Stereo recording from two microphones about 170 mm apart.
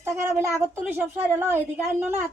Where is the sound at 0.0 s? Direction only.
15° right (ahead or behind).